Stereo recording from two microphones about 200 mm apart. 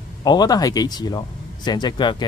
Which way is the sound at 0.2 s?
20° left (ahead or behind).